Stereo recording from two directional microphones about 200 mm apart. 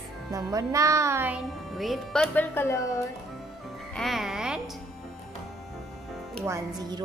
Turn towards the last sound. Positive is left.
turn(degrees=-15)  # may be behind; listen again after turning